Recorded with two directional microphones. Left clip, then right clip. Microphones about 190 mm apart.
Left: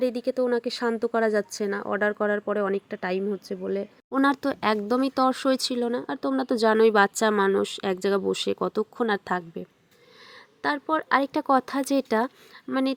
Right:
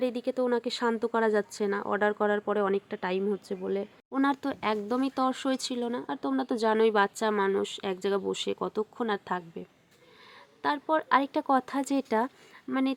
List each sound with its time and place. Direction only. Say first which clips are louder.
0.0 s a woman's voice: left 4 dB; 15° left (ahead or behind)
4.2 s speech: left 5 dB; 25° left (ahead or behind)